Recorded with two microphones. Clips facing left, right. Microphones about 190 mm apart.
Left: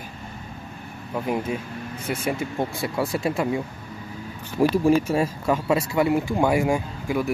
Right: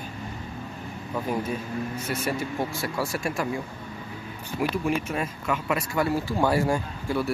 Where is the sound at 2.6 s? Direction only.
20° left (ahead or behind).